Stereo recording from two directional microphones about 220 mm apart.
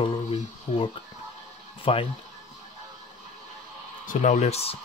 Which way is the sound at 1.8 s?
25° left (ahead or behind).